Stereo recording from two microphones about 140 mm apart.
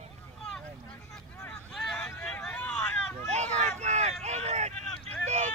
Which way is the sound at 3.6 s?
55° right (ahead or behind).